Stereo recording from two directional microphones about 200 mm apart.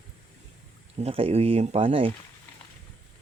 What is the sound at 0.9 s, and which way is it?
Speech, 30° right (ahead or behind).